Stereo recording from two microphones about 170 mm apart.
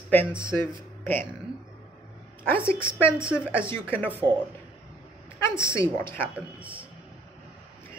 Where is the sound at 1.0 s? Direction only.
10° left (ahead or behind).